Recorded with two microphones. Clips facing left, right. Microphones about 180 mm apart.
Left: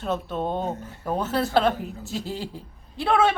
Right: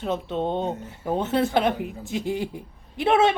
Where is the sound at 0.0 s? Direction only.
20° right (ahead or behind).